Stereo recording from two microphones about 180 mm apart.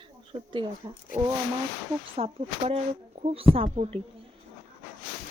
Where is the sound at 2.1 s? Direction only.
35° right (ahead or behind).